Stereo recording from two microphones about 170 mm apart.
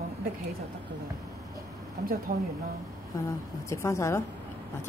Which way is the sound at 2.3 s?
50° right (ahead or behind).